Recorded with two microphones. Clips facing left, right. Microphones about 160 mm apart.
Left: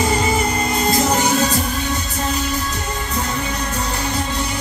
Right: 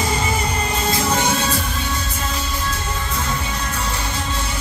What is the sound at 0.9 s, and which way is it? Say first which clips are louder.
Music: left 3 dB; 40° left (ahead or behind).